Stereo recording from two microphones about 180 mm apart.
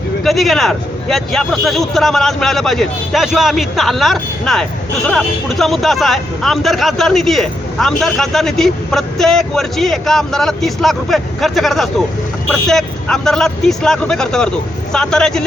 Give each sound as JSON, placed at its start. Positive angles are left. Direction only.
{"t": 0.3, "sound": "speech", "side_deg": 0}